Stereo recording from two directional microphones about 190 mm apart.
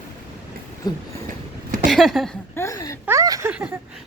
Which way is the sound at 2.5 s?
15° left (ahead or behind).